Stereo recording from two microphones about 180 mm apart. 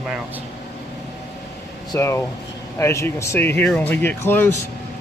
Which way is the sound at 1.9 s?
15° left (ahead or behind).